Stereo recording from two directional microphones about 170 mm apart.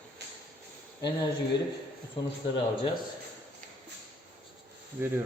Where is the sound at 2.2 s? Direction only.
30° left (ahead or behind).